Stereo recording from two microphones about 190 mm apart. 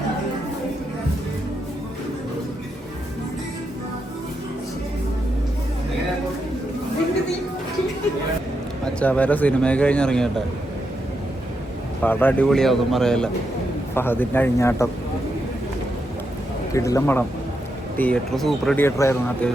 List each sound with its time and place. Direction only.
9.0 s speech: 10° left (ahead or behind)
12.0 s a man's voice: 10° left (ahead or behind)
16.7 s speech: 15° left (ahead or behind)